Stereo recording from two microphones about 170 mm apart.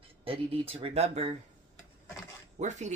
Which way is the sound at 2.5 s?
45° right (ahead or behind).